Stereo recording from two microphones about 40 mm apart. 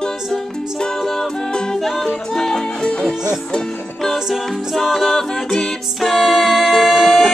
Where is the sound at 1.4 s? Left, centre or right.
Centre.